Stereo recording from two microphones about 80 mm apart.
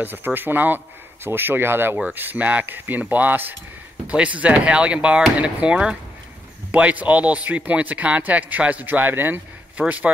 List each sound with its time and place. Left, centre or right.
0.0 s speech: right